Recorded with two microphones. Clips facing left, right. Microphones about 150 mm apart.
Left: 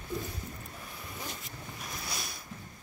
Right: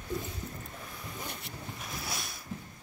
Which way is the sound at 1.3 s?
70° right (ahead or behind).